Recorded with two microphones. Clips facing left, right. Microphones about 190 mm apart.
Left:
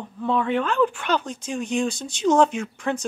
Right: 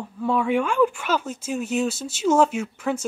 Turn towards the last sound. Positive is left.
turn(degrees=-5)  # may be behind; listen again after turning